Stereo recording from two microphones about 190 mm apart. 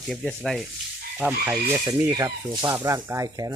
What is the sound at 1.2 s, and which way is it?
Speech, 10° right (ahead or behind).